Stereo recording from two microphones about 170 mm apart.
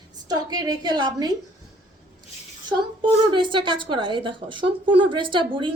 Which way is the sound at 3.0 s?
30° right (ahead or behind).